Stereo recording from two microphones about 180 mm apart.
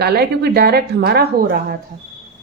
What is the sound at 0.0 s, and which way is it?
A woman's voice, 60° right (ahead or behind).